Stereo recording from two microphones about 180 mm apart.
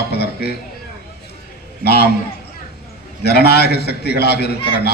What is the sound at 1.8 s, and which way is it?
Speech, 60° left (ahead or behind).